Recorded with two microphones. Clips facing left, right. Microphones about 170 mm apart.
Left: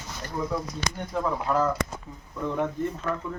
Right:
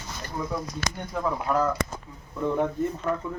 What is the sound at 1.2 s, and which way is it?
Speech, 5° right (ahead or behind).